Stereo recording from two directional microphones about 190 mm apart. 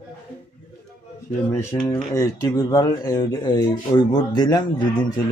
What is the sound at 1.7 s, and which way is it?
Speech, 20° left (ahead or behind).